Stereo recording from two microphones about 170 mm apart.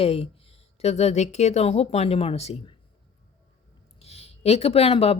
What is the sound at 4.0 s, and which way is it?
Speech, 40° left (ahead or behind).